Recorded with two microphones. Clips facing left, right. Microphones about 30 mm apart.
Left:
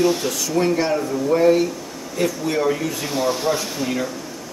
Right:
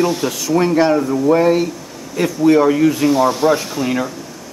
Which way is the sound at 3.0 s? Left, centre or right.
Centre.